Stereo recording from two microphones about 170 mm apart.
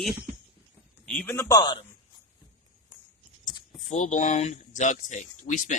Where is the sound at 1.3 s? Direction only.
20° left (ahead or behind).